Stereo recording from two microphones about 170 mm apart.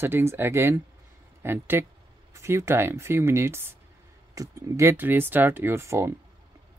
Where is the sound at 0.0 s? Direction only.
15° right (ahead or behind).